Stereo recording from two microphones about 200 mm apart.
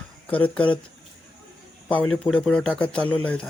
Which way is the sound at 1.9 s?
5° left (ahead or behind).